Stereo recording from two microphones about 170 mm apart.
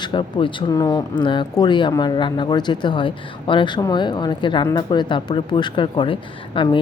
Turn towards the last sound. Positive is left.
turn(degrees=30)  # may be behind; listen again after turning